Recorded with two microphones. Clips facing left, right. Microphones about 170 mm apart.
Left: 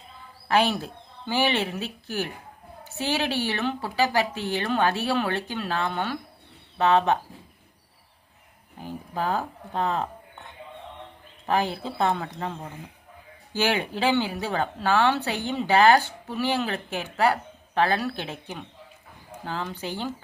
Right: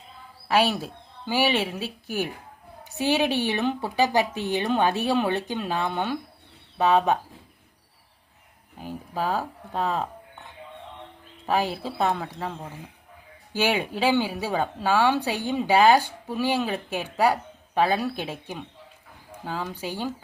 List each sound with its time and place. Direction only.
0.4 s speech: 5° right (ahead or behind)
8.8 s speech: 5° right (ahead or behind)
11.4 s speech: 5° right (ahead or behind)